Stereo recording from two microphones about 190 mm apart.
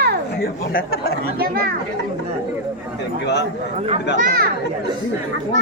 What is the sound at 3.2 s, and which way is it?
Speech, 65° left (ahead or behind).